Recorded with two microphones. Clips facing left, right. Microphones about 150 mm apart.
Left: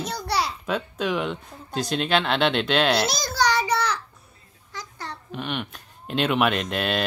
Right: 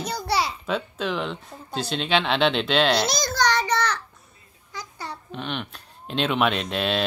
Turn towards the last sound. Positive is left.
turn(degrees=0)  # may be behind; listen again after turning